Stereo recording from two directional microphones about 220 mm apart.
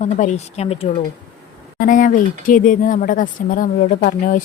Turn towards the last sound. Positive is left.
turn(degrees=35)  # may be behind; listen again after turning